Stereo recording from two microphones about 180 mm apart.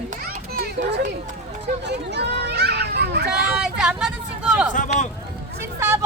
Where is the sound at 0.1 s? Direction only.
50° right (ahead or behind).